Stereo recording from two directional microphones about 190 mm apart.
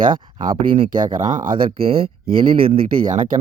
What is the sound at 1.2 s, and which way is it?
Speech, 40° right (ahead or behind).